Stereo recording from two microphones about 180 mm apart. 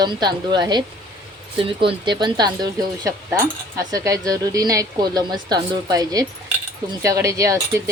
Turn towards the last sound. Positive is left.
turn(degrees=-15)  # may be behind; listen again after turning